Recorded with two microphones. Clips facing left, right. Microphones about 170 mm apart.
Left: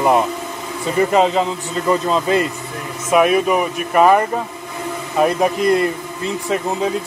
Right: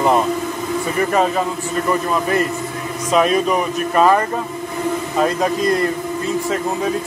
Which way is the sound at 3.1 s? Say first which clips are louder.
Left 2 dB; 10° left (ahead or behind).